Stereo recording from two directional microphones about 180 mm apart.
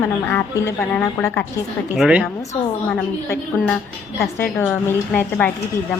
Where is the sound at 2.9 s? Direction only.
5° left (ahead or behind).